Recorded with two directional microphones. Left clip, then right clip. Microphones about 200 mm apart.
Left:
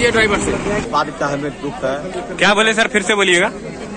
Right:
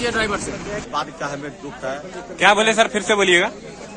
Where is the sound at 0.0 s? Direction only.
60° right (ahead or behind).